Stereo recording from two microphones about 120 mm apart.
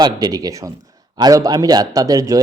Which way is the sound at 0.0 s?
30° right (ahead or behind).